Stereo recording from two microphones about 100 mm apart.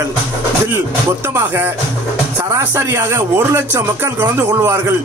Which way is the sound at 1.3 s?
20° right (ahead or behind).